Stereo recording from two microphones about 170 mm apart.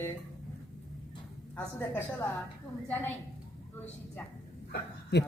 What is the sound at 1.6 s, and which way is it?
Speech, 10° left (ahead or behind).